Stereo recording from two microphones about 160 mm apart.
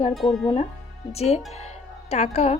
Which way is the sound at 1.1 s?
40° left (ahead or behind).